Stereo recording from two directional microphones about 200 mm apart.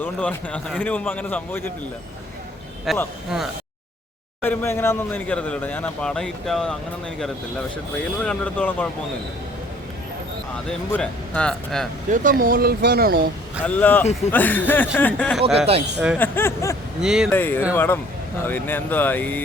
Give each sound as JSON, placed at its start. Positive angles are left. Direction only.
{"t": 0.0, "sound": "speech", "side_deg": 5}
{"t": 2.9, "sound": "speech", "side_deg": 0}
{"t": 4.4, "sound": "speech", "side_deg": 10}
{"t": 8.2, "sound": "speech", "side_deg": 5}
{"t": 10.7, "sound": "speech", "side_deg": 5}
{"t": 12.1, "sound": "speech", "side_deg": -45}
{"t": 13.7, "sound": "speech", "side_deg": 10}
{"t": 15.5, "sound": "speech", "side_deg": -30}
{"t": 16.1, "sound": "speech", "side_deg": 10}
{"t": 17.0, "sound": "speech", "side_deg": -5}
{"t": 17.2, "sound": "speech", "side_deg": 10}